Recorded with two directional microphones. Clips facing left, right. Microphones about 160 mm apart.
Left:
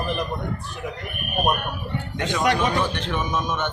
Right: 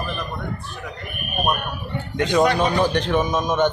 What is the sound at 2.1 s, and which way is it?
A man's voice, 35° right (ahead or behind).